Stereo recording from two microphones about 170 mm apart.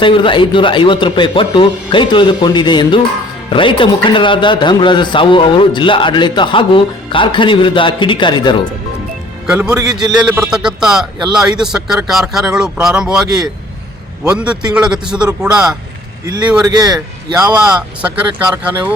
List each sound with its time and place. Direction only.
0.0 s a man's voice: 30° left (ahead or behind)
9.5 s speech: 15° right (ahead or behind)
10.3 s speech: 5° right (ahead or behind)
14.3 s speech: 5° right (ahead or behind)
16.6 s speech: 20° right (ahead or behind)
18.0 s speech: 10° right (ahead or behind)